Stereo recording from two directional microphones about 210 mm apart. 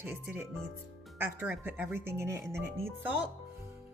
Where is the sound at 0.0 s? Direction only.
10° right (ahead or behind).